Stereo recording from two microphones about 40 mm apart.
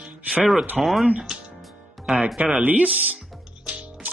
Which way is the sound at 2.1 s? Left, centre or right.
Centre.